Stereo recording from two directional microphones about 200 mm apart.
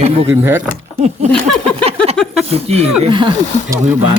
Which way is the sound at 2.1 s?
5° left (ahead or behind).